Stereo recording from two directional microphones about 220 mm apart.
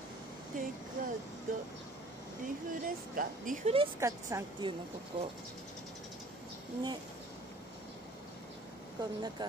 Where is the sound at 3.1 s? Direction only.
35° right (ahead or behind).